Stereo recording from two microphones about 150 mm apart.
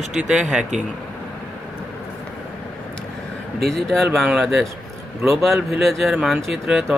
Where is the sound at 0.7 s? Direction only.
55° right (ahead or behind).